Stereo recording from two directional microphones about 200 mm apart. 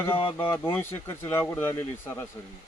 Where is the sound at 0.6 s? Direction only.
10° left (ahead or behind).